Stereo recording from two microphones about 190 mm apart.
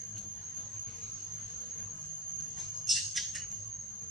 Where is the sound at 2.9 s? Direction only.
Centre (ahead or behind).